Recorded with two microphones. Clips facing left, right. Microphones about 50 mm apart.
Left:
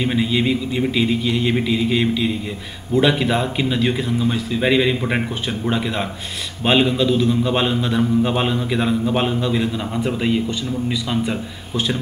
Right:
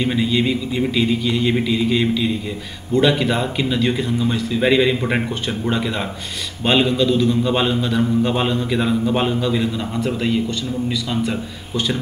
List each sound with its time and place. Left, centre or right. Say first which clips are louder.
0.0 s a man's voice: even; centre
9.9 s a man's voice: left 1 dB; centre